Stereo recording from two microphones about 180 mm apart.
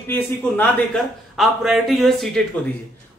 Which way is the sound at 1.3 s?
Centre (ahead or behind).